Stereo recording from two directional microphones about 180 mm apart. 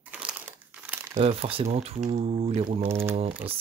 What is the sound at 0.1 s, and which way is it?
Crumpling, 5° right (ahead or behind).